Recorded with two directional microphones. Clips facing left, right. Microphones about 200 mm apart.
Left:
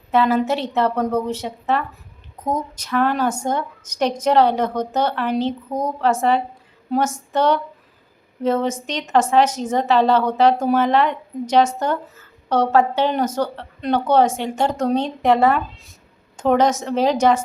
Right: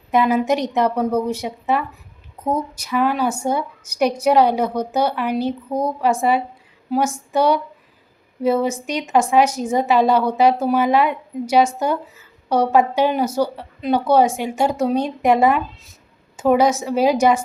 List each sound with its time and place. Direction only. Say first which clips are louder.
0.1 s a woman's voice: right 1 dB; 15° right (ahead or behind)